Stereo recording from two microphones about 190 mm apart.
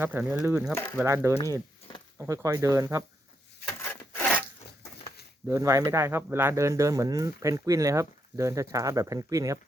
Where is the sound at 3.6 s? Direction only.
55° left (ahead or behind).